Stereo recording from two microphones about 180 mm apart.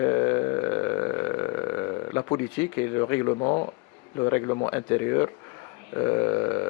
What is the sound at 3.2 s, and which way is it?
Speech, 30° left (ahead or behind).